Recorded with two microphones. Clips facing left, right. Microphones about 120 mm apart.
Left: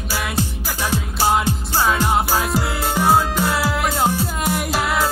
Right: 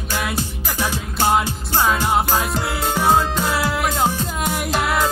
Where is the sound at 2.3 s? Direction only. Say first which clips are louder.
Left 1 dB; 5° left (ahead or behind).